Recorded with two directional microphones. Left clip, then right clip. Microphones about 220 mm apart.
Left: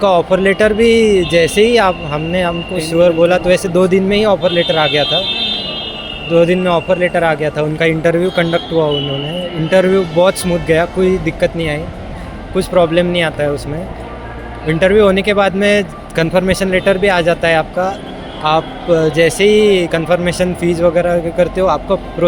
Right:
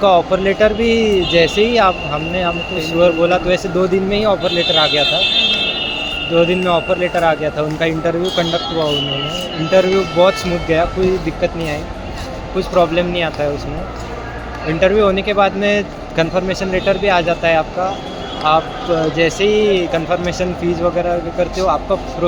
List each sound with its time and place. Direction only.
0.0 s speech: 35° left (ahead or behind)
6.3 s speech: 30° left (ahead or behind)
9.6 s speech: 40° left (ahead or behind)
14.7 s speech: 35° left (ahead or behind)